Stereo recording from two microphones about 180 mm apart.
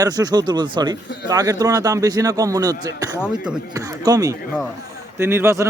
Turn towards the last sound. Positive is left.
turn(degrees=-15)  # may be behind; listen again after turning